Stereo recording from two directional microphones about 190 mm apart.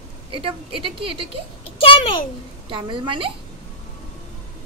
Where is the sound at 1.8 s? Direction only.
25° left (ahead or behind).